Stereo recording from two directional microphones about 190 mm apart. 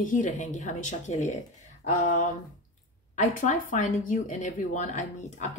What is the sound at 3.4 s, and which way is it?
A woman's voice, 40° left (ahead or behind).